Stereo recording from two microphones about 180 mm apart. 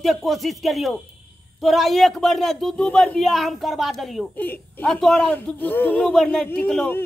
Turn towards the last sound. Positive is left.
turn(degrees=5)  # may be behind; listen again after turning